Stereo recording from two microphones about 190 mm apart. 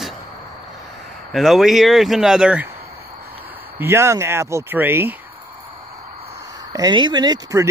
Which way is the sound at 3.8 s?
15° right (ahead or behind).